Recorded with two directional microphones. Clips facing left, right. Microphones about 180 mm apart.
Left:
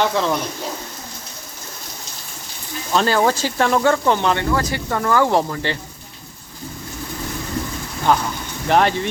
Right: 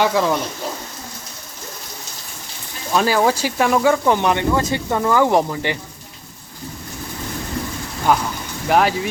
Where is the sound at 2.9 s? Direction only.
10° right (ahead or behind).